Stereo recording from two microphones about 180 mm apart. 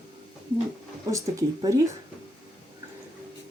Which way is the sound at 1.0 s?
15° right (ahead or behind).